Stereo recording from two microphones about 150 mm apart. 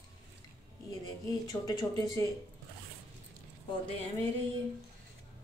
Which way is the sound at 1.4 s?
25° left (ahead or behind).